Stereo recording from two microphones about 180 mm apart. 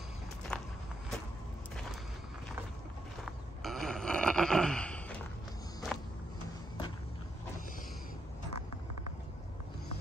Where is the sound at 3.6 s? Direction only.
Centre (ahead or behind).